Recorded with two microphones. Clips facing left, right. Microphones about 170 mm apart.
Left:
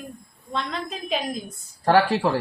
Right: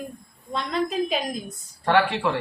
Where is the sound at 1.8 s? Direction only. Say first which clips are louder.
Left 2 dB; 35° left (ahead or behind).